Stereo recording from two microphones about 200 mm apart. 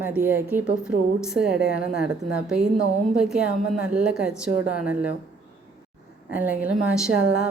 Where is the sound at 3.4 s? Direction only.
50° left (ahead or behind).